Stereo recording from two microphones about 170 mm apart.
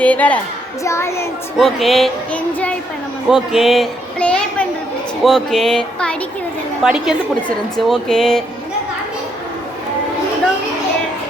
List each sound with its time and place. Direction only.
0.0 s child singing: 10° left (ahead or behind)
1.5 s music: centre (ahead or behind)
3.2 s a woman's voice: centre (ahead or behind)
5.2 s music: centre (ahead or behind)